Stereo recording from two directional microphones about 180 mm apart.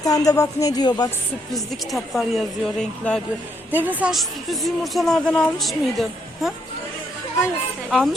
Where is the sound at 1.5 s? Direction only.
Centre (ahead or behind).